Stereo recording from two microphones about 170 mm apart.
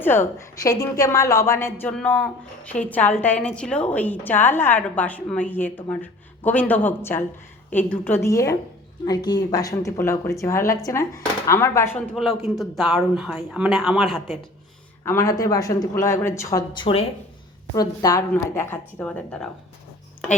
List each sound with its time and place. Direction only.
0.0 s a woman's voice: 15° left (ahead or behind)
12.1 s speech: centre (ahead or behind)
15.0 s speech: 15° left (ahead or behind); by 17.1 s 30° left (ahead or behind)
17.7 s a woman's voice: 20° left (ahead or behind)